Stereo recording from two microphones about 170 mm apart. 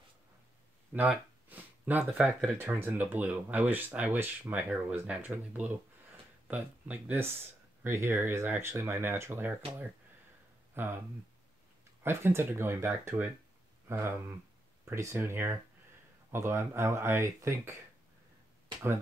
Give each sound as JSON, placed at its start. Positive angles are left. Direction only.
{"t": 0.9, "sound": "speech", "side_deg": -10}
{"t": 10.7, "sound": "a sound", "side_deg": -15}
{"t": 12.0, "sound": "speech", "side_deg": -15}